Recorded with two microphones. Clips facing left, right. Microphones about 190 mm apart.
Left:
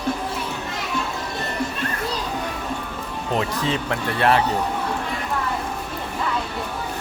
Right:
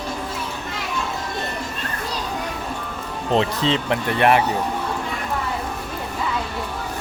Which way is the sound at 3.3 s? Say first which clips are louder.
Right 4 dB; 25° right (ahead or behind).